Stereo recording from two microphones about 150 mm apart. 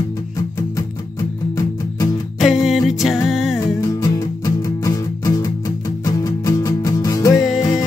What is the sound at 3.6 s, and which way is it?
Music, 25° left (ahead or behind).